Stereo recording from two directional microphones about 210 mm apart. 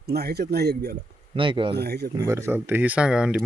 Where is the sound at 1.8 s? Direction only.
50° right (ahead or behind).